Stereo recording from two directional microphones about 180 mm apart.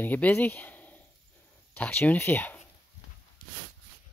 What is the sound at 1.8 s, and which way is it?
Speech, 10° left (ahead or behind).